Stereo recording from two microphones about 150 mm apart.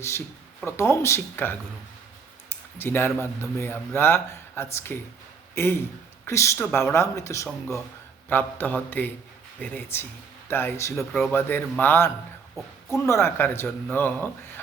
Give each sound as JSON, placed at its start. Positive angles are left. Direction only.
{"t": 0.6, "sound": "speech", "side_deg": 15}